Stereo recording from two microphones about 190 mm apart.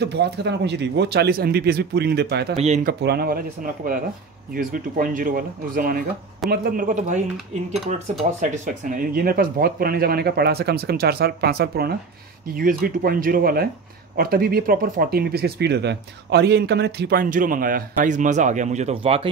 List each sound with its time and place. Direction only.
0.0 s speech: 60° right (ahead or behind)
2.5 s speech: 35° right (ahead or behind)
2.9 s speech: 60° right (ahead or behind); by 7.2 s 45° right (ahead or behind)
8.2 s speech: 45° right (ahead or behind)